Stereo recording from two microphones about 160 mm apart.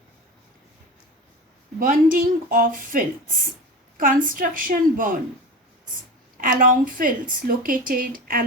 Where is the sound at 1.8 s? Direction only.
60° right (ahead or behind).